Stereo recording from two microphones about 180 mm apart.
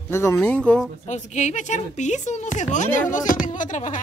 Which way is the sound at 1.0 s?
40° left (ahead or behind).